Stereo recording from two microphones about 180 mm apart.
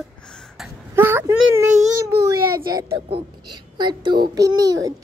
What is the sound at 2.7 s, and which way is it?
A child's voice, 15° right (ahead or behind).